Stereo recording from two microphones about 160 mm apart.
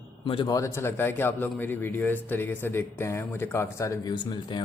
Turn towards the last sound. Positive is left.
turn(degrees=25)  # may be behind; listen again after turning